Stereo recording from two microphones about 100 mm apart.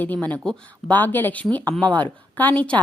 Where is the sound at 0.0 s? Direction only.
15° left (ahead or behind).